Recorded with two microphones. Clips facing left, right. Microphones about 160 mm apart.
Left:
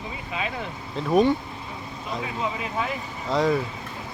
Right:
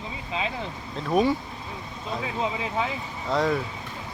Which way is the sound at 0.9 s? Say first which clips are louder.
Left 3 dB; centre (ahead or behind).